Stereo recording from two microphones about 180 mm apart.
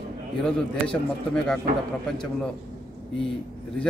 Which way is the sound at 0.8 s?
5° left (ahead or behind).